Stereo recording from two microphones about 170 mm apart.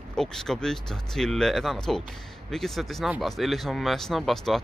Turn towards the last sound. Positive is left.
turn(degrees=0)  # may be behind; listen again after turning